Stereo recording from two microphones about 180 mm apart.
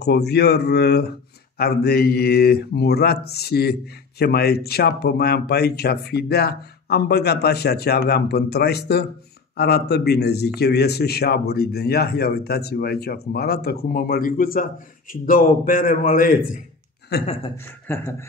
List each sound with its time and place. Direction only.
0.0 s speech: 65° left (ahead or behind); by 16.3 s 50° left (ahead or behind)
17.6 s speech: 10° left (ahead or behind)